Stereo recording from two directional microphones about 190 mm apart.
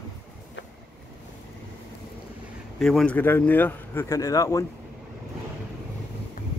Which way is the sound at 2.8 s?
5° left (ahead or behind).